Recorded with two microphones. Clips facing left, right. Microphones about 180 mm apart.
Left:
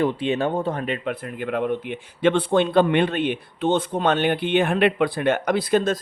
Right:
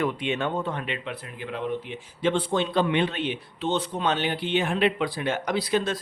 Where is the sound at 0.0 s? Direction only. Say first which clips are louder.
Left 5 dB; 30° left (ahead or behind).